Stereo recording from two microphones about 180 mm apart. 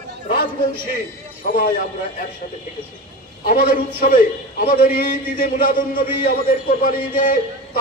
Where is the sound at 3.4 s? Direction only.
45° left (ahead or behind).